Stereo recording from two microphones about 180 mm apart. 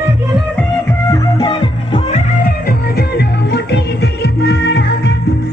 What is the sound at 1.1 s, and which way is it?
Music, 25° left (ahead or behind).